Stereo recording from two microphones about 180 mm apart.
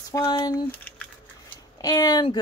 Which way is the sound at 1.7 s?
20° left (ahead or behind).